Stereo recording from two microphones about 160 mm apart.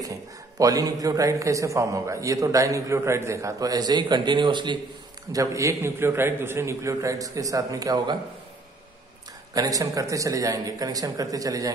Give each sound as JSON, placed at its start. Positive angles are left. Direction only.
{"t": 0.0, "sound": "a man's voice", "side_deg": -20}
{"t": 9.5, "sound": "a man's voice", "side_deg": -20}